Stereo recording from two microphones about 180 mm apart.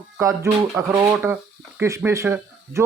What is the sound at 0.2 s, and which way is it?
Speech, 15° right (ahead or behind).